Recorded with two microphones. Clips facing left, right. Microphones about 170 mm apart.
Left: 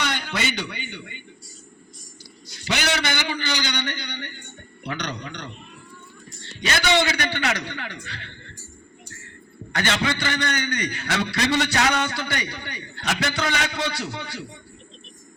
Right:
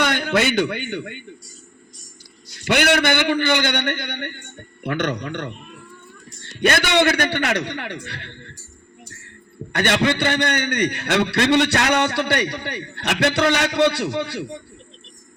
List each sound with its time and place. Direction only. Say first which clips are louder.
0.0 s a man's voice: right 8 dB; 55° right (ahead or behind)
2.6 s a man's voice: right 7 dB; 55° right (ahead or behind)
9.7 s a man's voice: right 5 dB; 55° right (ahead or behind)